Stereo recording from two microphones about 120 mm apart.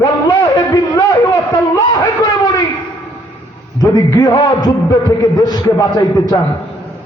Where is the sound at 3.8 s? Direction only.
35° left (ahead or behind).